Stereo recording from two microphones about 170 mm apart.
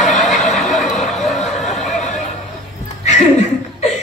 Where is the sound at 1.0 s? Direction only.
40° left (ahead or behind).